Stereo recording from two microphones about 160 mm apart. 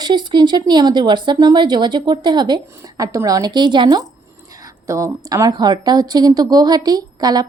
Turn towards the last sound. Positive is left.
turn(degrees=-25)  # may be behind; listen again after turning